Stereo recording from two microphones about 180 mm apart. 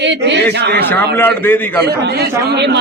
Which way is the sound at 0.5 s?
65° right (ahead or behind).